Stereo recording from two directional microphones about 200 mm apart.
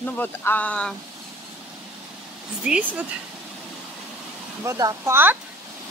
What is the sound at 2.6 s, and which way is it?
Speech, 5° right (ahead or behind).